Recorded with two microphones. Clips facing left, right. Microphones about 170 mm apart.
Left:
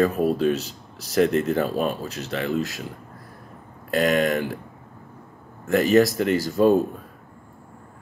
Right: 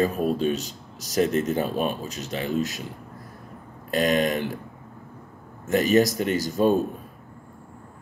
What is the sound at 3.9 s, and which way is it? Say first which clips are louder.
Speech: left 2 dB; 20° right (ahead or behind).